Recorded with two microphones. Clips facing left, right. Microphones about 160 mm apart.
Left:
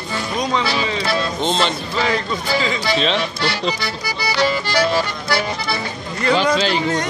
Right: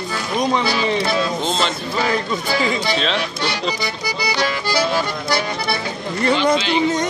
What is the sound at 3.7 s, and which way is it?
Music, 15° right (ahead or behind).